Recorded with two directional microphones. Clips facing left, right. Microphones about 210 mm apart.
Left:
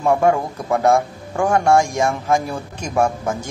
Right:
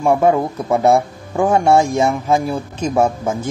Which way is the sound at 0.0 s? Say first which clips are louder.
Right 2 dB; 20° right (ahead or behind).